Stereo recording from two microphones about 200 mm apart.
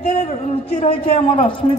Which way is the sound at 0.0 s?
50° left (ahead or behind).